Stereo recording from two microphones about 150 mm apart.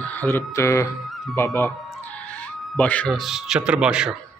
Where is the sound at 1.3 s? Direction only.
20° left (ahead or behind).